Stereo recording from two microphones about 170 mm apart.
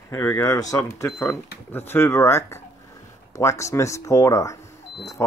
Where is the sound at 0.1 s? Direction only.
15° left (ahead or behind).